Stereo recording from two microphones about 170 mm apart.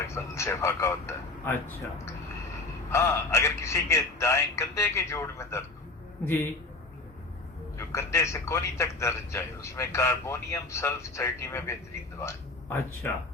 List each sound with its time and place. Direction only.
0.1 s speech: 15° left (ahead or behind)
2.9 s speech: 15° left (ahead or behind)
7.8 s speech: 15° left (ahead or behind)